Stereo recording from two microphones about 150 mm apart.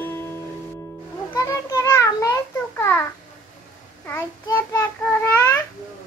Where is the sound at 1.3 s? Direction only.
20° left (ahead or behind).